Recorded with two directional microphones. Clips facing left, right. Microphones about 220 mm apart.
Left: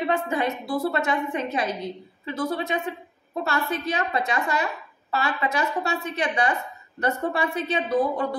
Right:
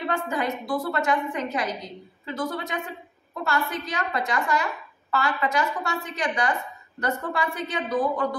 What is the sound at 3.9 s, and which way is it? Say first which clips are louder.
A woman's voice: even; 25° left (ahead or behind).